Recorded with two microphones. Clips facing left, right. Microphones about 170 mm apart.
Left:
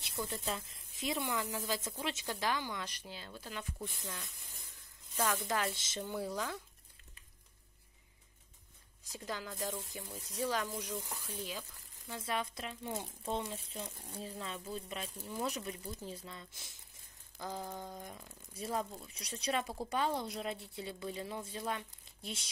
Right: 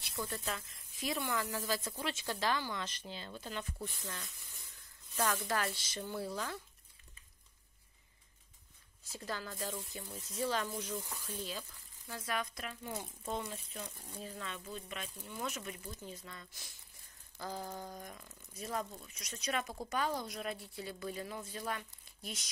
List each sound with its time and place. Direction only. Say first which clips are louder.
0.2 s speech: left 1 dB; 20° left (ahead or behind)
5.3 s speech: left 1 dB; 20° left (ahead or behind)
6.0 s speech: left 1 dB; centre (ahead or behind)
9.1 s speech: even; 15° left (ahead or behind)
9.5 s speech: left 1 dB; 5° left (ahead or behind)
9.8 s speech: even; 20° left (ahead or behind)
12.1 s speech: left 1 dB; 25° left (ahead or behind)
17.4 s a sound: even; 20° left (ahead or behind)
17.6 s speech: even; centre (ahead or behind)
18.0 s speech: left 1 dB; 20° left (ahead or behind)